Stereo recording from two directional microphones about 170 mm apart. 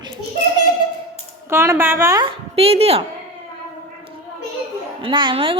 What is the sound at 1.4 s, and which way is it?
Speech, 15° right (ahead or behind).